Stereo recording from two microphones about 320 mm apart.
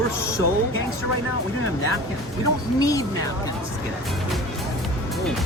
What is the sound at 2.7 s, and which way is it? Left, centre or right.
Speech, centre.